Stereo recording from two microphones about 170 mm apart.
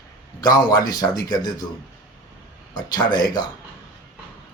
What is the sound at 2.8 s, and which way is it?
Speech, 25° left (ahead or behind).